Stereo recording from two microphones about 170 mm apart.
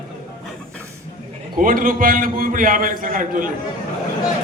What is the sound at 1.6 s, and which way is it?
A man's voice, 55° right (ahead or behind).